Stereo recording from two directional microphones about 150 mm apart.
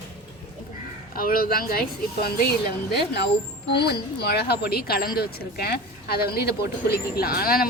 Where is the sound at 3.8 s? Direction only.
90° left.